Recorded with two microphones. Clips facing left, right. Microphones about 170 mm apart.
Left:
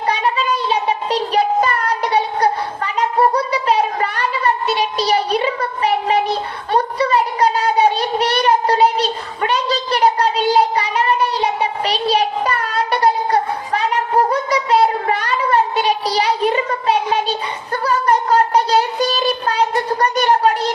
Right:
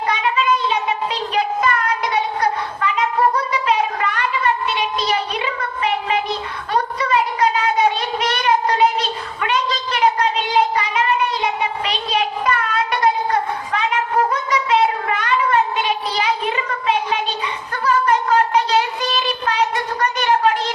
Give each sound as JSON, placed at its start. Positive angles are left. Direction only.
{"t": 0.1, "sound": "cat", "side_deg": 35}